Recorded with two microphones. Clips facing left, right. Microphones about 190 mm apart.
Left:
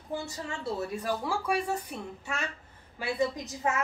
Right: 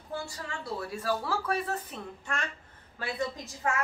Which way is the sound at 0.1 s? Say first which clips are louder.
Left 2 dB; 20° left (ahead or behind).